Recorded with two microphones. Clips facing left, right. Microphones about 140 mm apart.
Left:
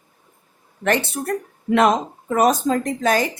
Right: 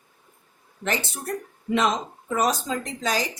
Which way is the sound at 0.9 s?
60° left (ahead or behind).